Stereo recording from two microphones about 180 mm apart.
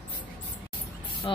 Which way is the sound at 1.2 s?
30° left (ahead or behind).